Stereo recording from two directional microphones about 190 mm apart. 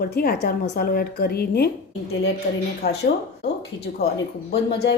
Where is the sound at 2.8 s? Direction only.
55° left (ahead or behind).